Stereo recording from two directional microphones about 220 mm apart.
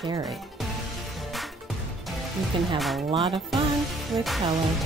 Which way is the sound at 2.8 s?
Centre (ahead or behind).